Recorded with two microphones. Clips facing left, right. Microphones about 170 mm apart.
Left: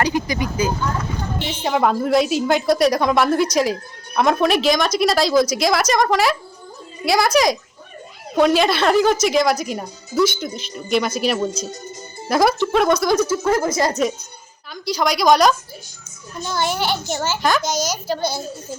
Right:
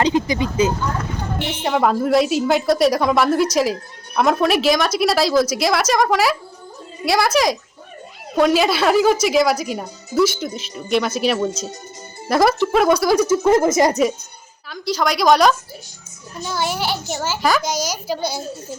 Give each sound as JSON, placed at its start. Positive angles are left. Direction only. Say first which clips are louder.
{"t": 0.0, "sound": "a sound", "louder": "right 3 dB", "side_deg": -25}
{"t": 1.6, "sound": "a woman's voice", "louder": "right 1 dB", "side_deg": 0}
{"t": 13.2, "sound": "a woman's voice", "louder": "right 4 dB", "side_deg": -20}
{"t": 14.0, "sound": "a woman's voice", "louder": "right 2 dB", "side_deg": -5}